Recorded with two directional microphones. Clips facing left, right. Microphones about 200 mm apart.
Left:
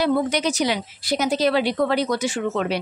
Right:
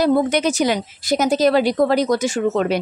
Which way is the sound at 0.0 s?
45° right (ahead or behind).